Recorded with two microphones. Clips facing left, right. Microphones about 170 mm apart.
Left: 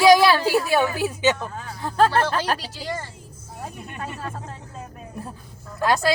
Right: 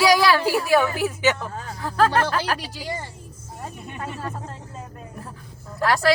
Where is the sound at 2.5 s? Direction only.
15° right (ahead or behind).